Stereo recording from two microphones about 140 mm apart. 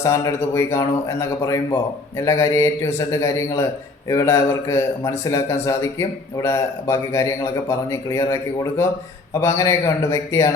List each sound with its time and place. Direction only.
0.0 s a man's voice: 20° left (ahead or behind)